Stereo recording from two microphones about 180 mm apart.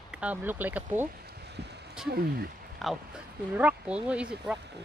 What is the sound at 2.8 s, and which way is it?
Speech, centre (ahead or behind).